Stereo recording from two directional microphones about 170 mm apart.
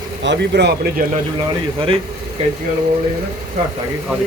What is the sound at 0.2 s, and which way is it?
Speech, 85° right.